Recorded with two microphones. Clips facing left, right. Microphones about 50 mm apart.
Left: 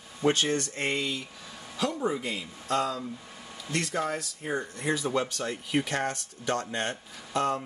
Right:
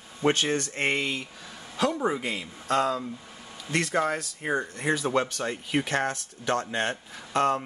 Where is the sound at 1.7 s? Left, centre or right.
Right.